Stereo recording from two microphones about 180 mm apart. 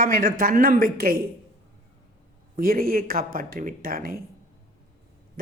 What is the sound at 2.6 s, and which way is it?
A man's voice, 55° right (ahead or behind).